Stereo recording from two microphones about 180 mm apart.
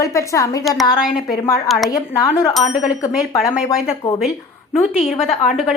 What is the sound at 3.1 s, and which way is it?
Speech, 5° right (ahead or behind).